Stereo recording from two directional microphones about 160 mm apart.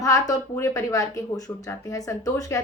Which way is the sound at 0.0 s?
20° left (ahead or behind).